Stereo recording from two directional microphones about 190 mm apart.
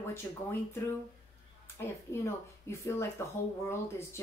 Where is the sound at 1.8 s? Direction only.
15° left (ahead or behind).